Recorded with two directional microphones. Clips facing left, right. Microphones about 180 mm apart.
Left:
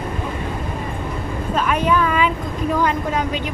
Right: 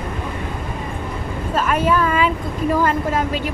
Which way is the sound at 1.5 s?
5° right (ahead or behind).